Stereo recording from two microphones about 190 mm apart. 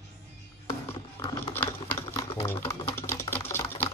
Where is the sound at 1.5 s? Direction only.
10° left (ahead or behind).